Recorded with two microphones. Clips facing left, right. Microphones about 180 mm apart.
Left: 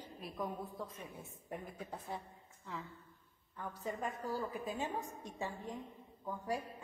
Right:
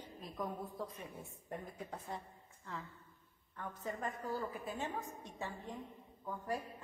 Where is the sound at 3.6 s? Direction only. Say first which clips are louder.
Left 1 dB; 10° left (ahead or behind).